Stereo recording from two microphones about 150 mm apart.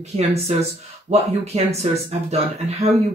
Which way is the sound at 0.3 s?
45° right (ahead or behind).